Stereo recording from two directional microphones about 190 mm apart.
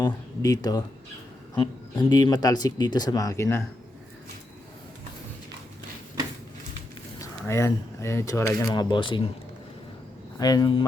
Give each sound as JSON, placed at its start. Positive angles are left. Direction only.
{"t": 0.0, "sound": "speech", "side_deg": 20}
{"t": 7.2, "sound": "speech", "side_deg": 15}
{"t": 10.3, "sound": "speech", "side_deg": 20}